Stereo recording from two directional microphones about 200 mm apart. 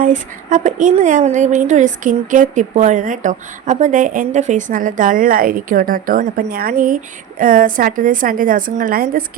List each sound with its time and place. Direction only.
0.0 s a woman's voice: 40° right (ahead or behind)